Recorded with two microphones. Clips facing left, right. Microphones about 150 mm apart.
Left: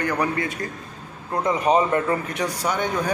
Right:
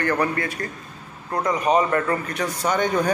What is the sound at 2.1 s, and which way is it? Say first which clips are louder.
Speech: even; 10° left (ahead or behind).